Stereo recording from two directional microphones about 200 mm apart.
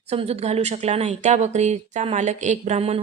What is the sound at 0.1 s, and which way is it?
Speech, 30° right (ahead or behind).